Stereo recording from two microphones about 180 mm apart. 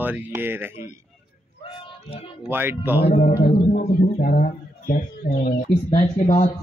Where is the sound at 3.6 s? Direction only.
35° left (ahead or behind).